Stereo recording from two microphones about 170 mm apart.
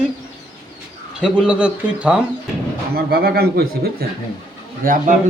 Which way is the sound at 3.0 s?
65° right (ahead or behind).